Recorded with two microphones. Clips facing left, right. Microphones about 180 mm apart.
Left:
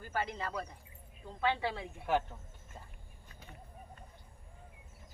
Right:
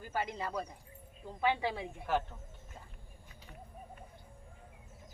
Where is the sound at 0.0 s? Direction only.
15° right (ahead or behind).